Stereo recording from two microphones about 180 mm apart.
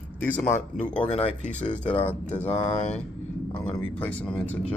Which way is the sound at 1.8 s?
10° left (ahead or behind).